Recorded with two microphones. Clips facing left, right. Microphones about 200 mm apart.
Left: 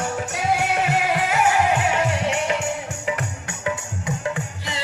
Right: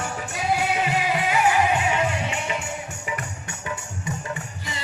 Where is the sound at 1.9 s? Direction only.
75° left (ahead or behind).